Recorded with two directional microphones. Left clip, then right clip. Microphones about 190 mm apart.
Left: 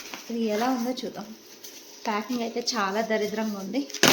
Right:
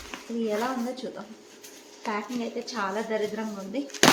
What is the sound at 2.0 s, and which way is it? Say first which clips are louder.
Speech: left 2 dB; 45° left (ahead or behind).